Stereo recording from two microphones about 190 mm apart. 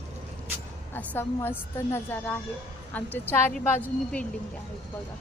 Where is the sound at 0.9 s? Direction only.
10° left (ahead or behind).